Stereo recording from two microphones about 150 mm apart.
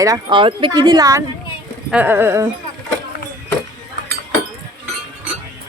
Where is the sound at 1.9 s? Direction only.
10° right (ahead or behind).